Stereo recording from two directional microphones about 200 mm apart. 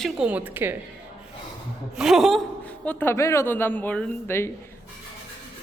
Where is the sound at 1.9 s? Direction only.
Centre (ahead or behind).